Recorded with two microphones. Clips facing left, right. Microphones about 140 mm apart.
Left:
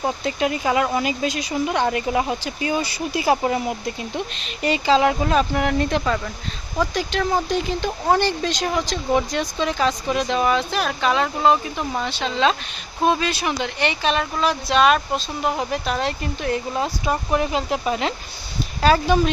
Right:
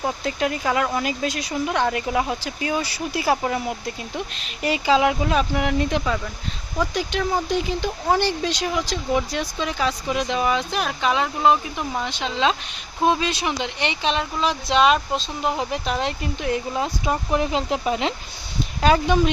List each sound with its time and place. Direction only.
0.0 s speech: 5° left (ahead or behind)
3.4 s speech: 10° left (ahead or behind)
4.4 s speech: 5° right (ahead or behind)